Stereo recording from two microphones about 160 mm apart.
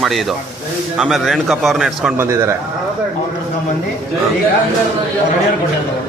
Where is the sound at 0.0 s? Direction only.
Centre (ahead or behind).